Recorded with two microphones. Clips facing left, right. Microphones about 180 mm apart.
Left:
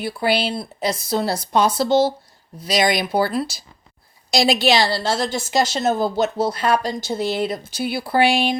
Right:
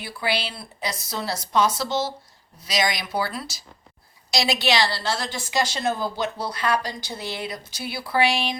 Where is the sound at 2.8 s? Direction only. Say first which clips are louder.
Left 6 dB; 55° left (ahead or behind).